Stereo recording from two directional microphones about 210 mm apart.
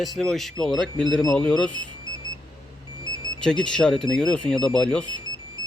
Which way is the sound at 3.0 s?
15° right (ahead or behind).